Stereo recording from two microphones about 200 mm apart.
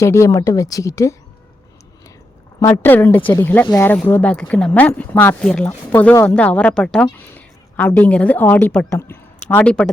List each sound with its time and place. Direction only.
0.0 s speech: 15° left (ahead or behind)
2.6 s speech: 15° left (ahead or behind)